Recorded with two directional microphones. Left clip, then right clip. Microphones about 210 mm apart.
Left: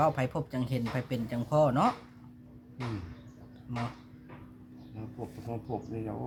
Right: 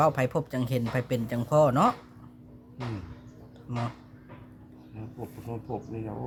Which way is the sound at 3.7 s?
35° right (ahead or behind).